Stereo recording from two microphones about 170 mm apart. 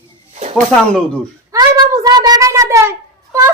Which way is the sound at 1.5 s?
25° right (ahead or behind).